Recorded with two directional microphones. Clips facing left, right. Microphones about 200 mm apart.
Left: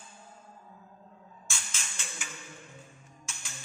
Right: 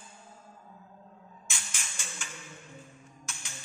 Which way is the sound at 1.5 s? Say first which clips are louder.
Left 1 dB; 15° right (ahead or behind).